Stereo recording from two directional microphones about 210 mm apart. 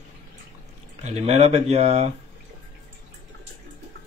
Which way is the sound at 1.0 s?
30° right (ahead or behind).